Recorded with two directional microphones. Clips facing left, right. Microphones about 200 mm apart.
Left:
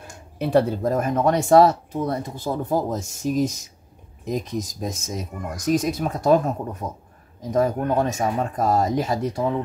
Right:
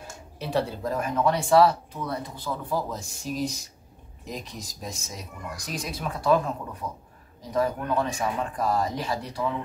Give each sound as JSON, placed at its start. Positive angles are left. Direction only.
{"t": 0.4, "sound": "speech", "side_deg": 55}